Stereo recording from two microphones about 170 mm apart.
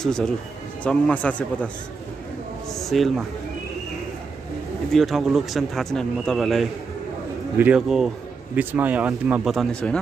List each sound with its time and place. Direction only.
0.0 s a man's voice: 5° left (ahead or behind)
2.7 s speech: centre (ahead or behind)
4.9 s a man's voice: centre (ahead or behind)